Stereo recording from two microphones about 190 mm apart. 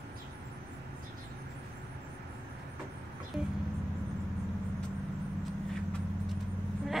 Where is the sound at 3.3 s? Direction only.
5° right (ahead or behind).